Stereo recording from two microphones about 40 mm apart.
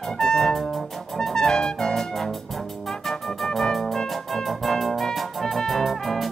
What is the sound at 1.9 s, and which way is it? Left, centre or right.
Music, centre.